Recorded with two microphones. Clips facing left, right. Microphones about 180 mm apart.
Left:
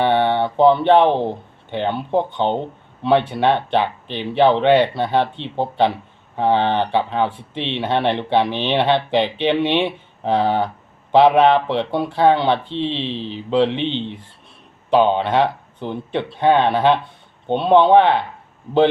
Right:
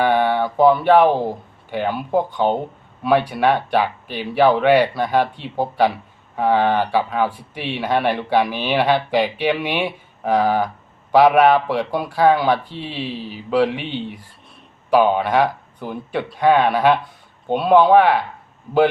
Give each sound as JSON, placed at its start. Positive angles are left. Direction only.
{"t": 0.0, "sound": "speech", "side_deg": 25}